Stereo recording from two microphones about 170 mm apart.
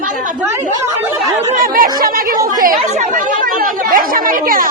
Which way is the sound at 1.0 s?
15° right (ahead or behind).